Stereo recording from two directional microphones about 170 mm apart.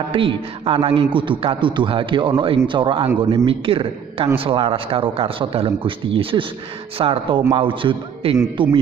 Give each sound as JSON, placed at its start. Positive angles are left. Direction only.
{"t": 0.1, "sound": "a man's voice", "side_deg": -30}